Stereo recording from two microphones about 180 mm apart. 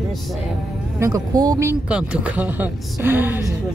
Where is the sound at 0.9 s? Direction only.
15° right (ahead or behind).